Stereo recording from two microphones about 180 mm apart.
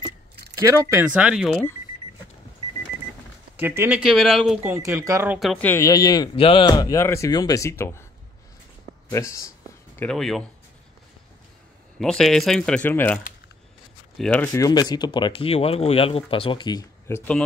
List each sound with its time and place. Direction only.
0.6 s speech: 15° right (ahead or behind); by 1.7 s centre (ahead or behind)
3.5 s speech: 15° right (ahead or behind)
4.0 s speech: centre (ahead or behind)
4.7 s speech: 15° right (ahead or behind)
5.4 s speech: 5° left (ahead or behind)
9.1 s speech: 15° left (ahead or behind)
9.9 s speech: 5° left (ahead or behind)
12.0 s speech: centre (ahead or behind); by 17.2 s 25° left (ahead or behind)